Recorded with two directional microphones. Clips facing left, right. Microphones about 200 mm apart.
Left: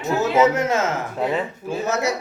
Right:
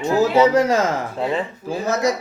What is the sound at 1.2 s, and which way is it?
Speech, 5° left (ahead or behind).